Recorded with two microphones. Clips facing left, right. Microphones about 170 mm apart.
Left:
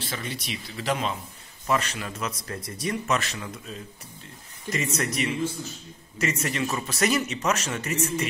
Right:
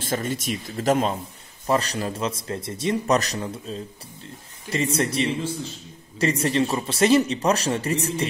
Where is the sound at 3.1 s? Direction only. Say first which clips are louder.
Right 6 dB; 40° right (ahead or behind).